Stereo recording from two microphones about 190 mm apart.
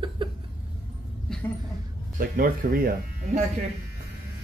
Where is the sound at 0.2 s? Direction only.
25° right (ahead or behind).